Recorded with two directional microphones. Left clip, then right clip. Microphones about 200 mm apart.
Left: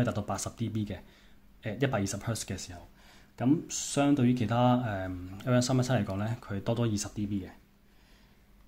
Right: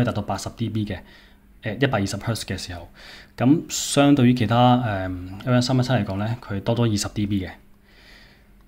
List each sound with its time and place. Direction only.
0.0 s speech: centre (ahead or behind)
3.0 s speech: 25° right (ahead or behind)